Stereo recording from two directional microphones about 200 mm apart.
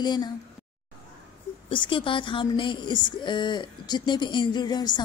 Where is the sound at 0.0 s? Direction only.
20° left (ahead or behind).